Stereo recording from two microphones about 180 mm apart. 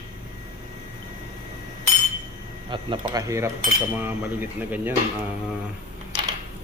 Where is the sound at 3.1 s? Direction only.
15° right (ahead or behind).